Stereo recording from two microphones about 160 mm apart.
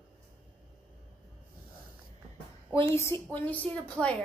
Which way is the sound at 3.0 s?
15° left (ahead or behind).